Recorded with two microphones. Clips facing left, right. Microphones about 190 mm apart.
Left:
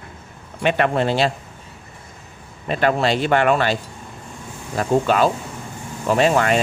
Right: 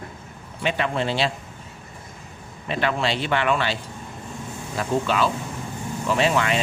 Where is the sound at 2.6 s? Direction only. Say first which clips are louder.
Left 5 dB; 45° left (ahead or behind).